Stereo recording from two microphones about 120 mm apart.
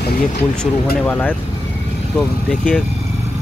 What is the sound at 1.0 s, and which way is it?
Speech, 15° left (ahead or behind).